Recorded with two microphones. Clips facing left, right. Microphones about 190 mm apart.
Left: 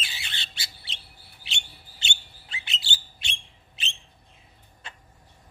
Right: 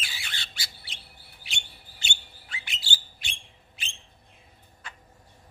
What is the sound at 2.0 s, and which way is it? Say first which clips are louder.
Bird: left 1 dB; 25° left (ahead or behind).